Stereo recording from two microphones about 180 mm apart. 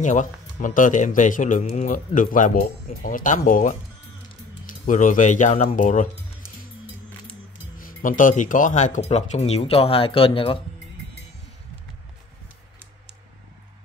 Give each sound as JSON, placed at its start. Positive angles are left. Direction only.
{"t": 0.0, "sound": "a man's voice", "side_deg": 45}
{"t": 7.8, "sound": "speech", "side_deg": 45}